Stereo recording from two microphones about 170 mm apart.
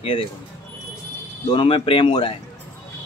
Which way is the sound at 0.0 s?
30° left (ahead or behind).